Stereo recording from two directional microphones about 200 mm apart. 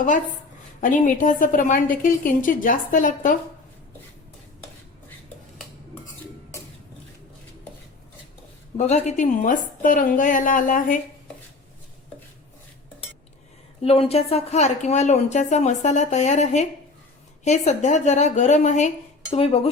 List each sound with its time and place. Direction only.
0.8 s a woman's voice: 40° left (ahead or behind)
8.8 s a woman's voice: 35° left (ahead or behind)
13.8 s a woman's voice: 30° left (ahead or behind)
19.3 s dishes: 30° left (ahead or behind)